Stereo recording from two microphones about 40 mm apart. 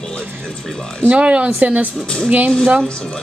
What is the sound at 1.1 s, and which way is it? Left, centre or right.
Speech, right.